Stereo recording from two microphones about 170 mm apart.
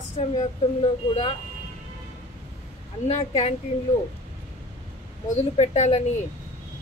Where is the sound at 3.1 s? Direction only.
40° left (ahead or behind).